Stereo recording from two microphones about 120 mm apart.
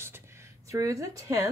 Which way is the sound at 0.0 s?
20° right (ahead or behind).